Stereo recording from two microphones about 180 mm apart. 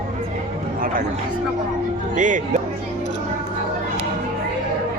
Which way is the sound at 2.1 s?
45° right (ahead or behind).